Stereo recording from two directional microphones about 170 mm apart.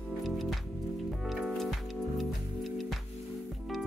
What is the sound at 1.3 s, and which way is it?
Music, centre (ahead or behind).